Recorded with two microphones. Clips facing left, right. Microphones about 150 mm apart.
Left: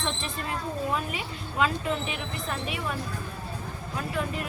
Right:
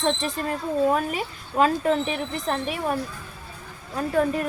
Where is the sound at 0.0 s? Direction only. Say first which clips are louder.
Right 8 dB; 40° right (ahead or behind).